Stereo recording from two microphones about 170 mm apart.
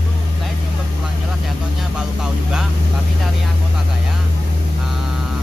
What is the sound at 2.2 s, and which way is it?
Vehicle, 5° right (ahead or behind).